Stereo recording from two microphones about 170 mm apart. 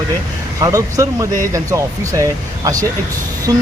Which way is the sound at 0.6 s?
20° right (ahead or behind).